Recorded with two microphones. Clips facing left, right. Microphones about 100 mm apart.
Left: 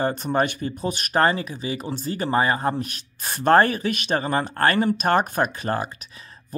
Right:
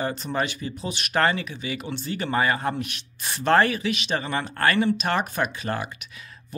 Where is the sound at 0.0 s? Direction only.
45° left (ahead or behind).